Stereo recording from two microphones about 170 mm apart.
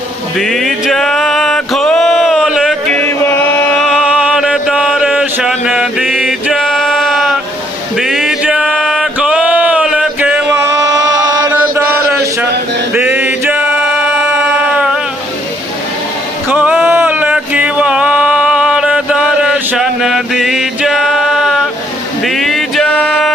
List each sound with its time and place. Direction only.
0.3 s music: centre (ahead or behind)
7.9 s a sound: centre (ahead or behind)
10.5 s a sound: 15° right (ahead or behind)
11.3 s chant: 20° right (ahead or behind)
12.9 s male singing: 10° right (ahead or behind)
16.5 s music: 10° right (ahead or behind)